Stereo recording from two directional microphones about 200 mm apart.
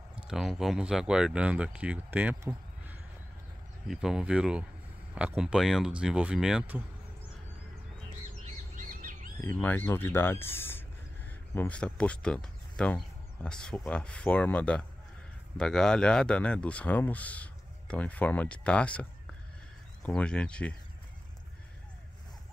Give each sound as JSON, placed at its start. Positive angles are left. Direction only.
{"t": 0.1, "sound": "speech", "side_deg": -5}
{"t": 8.5, "sound": "bird", "side_deg": -40}
{"t": 9.4, "sound": "speech", "side_deg": 10}